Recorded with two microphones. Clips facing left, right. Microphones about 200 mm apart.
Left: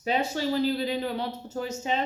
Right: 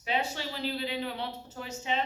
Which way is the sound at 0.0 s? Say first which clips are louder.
Left 6 dB; 40° left (ahead or behind).